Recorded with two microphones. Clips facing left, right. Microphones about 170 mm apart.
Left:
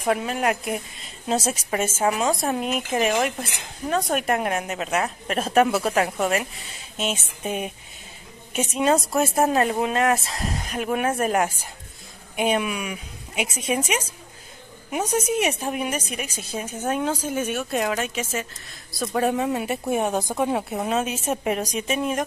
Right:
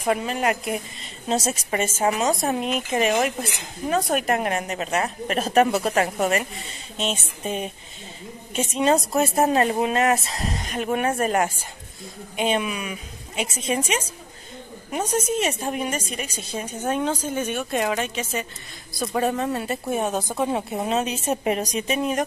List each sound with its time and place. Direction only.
0.0 s a woman's voice: centre (ahead or behind)
20.7 s speech: centre (ahead or behind)